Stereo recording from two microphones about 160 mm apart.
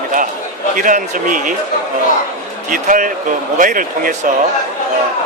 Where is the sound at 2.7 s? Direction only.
55° right (ahead or behind).